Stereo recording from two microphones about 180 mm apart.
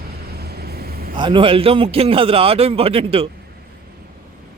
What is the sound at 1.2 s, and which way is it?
A man's voice, 25° right (ahead or behind).